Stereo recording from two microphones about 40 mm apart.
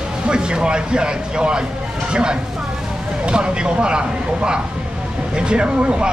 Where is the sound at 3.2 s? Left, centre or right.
Right.